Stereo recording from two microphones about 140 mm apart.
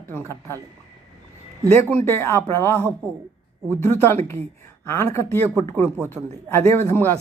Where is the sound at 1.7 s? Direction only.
20° left (ahead or behind).